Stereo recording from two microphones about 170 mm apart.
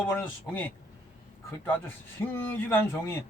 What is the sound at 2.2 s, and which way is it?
Speech, 10° left (ahead or behind).